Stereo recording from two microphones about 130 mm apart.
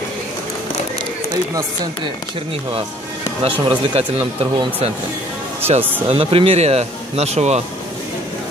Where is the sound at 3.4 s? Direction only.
45° right (ahead or behind).